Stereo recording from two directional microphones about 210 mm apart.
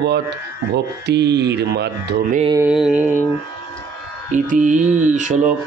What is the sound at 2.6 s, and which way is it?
Mantra, 5° right (ahead or behind).